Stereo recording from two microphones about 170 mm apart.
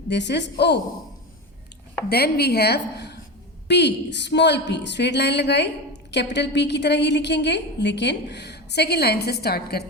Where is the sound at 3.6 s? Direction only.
90° left.